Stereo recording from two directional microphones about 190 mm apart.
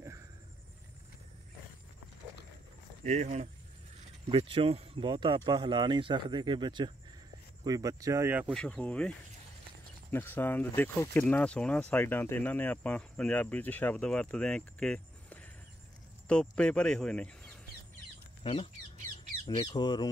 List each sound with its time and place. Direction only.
3.1 s speech: 40° right (ahead or behind)
4.3 s speech: 25° right (ahead or behind); by 8.5 s 10° right (ahead or behind)
8.5 s speech: 5° left (ahead or behind)
10.1 s speech: 10° left (ahead or behind)
18.4 s speech: 30° left (ahead or behind)